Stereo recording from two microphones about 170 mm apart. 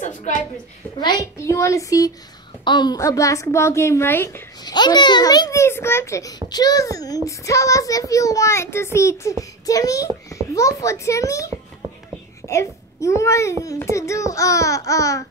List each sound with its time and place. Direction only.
0.0 s a sound: 45° left (ahead or behind)
1.0 s a child's voice: 20° left (ahead or behind)
4.7 s a child's voice: 25° left (ahead or behind)